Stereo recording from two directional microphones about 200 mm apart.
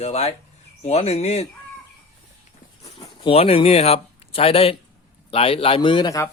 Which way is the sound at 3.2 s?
30° left (ahead or behind).